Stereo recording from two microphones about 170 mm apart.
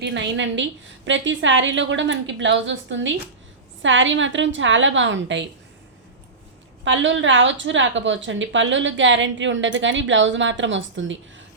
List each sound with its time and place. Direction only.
0.0 s a woman's voice: 90° right
6.8 s a woman's voice: 90° right